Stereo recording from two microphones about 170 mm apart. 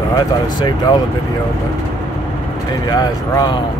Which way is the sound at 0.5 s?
25° left (ahead or behind).